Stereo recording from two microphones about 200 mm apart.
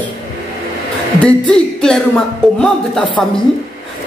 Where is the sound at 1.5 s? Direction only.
5° left (ahead or behind).